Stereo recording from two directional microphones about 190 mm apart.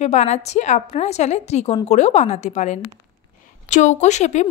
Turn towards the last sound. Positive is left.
turn(degrees=40)  # may be behind; listen again after turning